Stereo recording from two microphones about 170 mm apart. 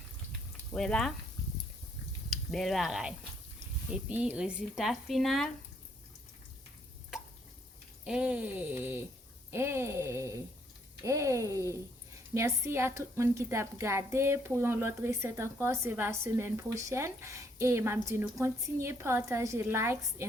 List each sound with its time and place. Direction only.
0.7 s speech: 5° left (ahead or behind)
2.3 s speech: centre (ahead or behind)
8.0 s a woman's voice: 5° right (ahead or behind)